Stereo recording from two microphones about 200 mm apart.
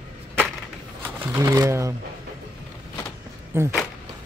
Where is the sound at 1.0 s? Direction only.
10° right (ahead or behind).